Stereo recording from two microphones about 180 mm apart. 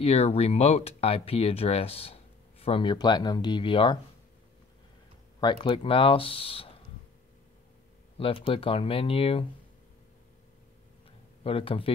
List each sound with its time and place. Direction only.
0.0 s speech: 35° left (ahead or behind)
5.4 s speech: 25° left (ahead or behind)
8.2 s speech: 30° left (ahead or behind)
11.4 s speech: 30° left (ahead or behind)